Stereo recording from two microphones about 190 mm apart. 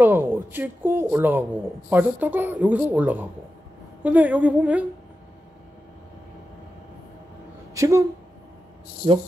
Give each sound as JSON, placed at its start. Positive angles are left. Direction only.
{"t": 0.0, "sound": "speech", "side_deg": -10}
{"t": 7.7, "sound": "speech", "side_deg": -15}
{"t": 9.0, "sound": "speech", "side_deg": -30}